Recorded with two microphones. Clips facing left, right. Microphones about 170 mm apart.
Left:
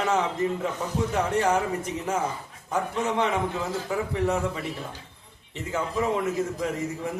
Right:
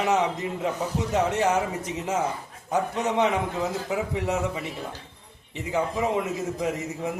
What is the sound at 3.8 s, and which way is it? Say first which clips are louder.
A man's voice: left 1 dB; 20° right (ahead or behind).